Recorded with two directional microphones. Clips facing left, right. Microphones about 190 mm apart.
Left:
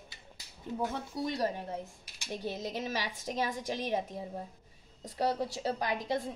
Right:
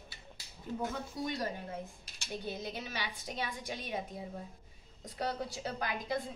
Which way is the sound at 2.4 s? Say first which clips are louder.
Left 4 dB; 90° left.